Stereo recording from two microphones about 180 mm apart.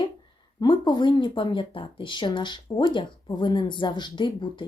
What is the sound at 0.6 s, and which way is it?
Speech, 25° left (ahead or behind).